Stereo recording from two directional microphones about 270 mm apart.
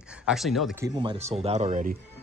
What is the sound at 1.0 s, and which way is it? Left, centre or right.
Speech, right.